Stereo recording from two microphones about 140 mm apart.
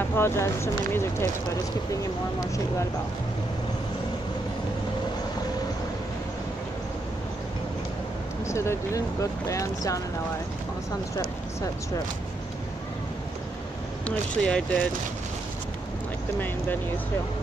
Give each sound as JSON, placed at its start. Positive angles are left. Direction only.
{"t": 0.1, "sound": "speech", "side_deg": 20}
{"t": 8.5, "sound": "speech", "side_deg": 20}
{"t": 14.0, "sound": "speech", "side_deg": 10}